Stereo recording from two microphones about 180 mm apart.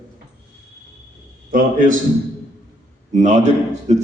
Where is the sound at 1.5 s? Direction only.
50° right (ahead or behind).